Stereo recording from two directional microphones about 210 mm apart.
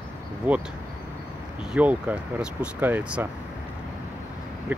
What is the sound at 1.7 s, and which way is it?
Speech, 5° right (ahead or behind).